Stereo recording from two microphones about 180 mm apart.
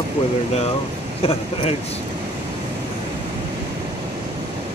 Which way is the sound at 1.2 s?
35° left (ahead or behind).